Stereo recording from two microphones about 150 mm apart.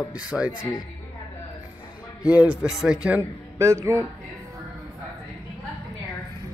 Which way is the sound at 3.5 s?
20° right (ahead or behind).